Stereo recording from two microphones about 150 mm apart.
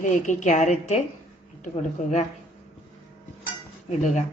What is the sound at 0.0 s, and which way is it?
A woman's voice, 55° left (ahead or behind).